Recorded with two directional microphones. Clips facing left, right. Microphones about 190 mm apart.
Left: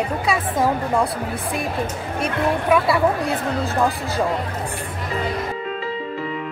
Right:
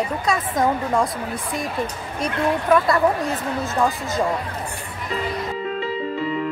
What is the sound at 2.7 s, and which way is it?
Speech, 10° left (ahead or behind).